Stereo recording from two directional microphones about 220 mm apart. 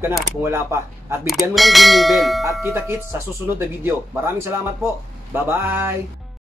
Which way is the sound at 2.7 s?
10° right (ahead or behind).